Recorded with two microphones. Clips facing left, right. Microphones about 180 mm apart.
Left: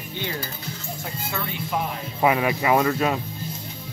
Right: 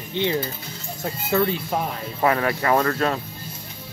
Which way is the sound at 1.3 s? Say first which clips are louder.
Right 7 dB; 35° right (ahead or behind).